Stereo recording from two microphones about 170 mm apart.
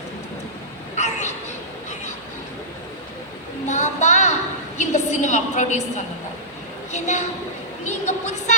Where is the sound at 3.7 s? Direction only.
45° left (ahead or behind).